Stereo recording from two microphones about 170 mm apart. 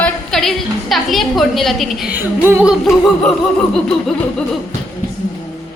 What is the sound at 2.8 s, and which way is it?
A woman's voice, centre (ahead or behind).